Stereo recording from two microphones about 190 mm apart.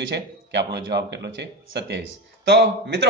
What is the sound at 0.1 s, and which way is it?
Speech, 60° right (ahead or behind).